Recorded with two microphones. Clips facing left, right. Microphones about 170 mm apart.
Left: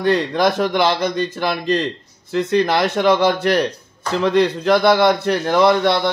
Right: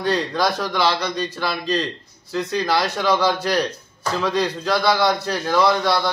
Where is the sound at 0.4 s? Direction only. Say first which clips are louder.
Left 4 dB; 55° left (ahead or behind).